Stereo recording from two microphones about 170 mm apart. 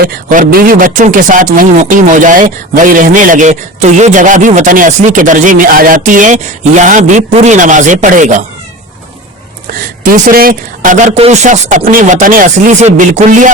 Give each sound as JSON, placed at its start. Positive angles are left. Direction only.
{"t": 0.0, "sound": "speech", "side_deg": -55}
{"t": 10.0, "sound": "speech", "side_deg": -55}